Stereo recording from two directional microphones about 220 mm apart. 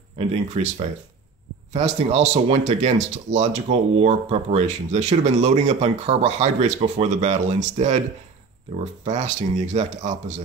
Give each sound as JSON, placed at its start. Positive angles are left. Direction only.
{"t": 0.2, "sound": "speech", "side_deg": -30}